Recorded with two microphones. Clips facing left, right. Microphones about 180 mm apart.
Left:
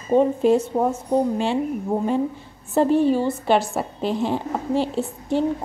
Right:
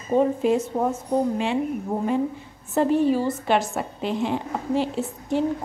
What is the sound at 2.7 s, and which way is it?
A woman's voice, 30° left (ahead or behind).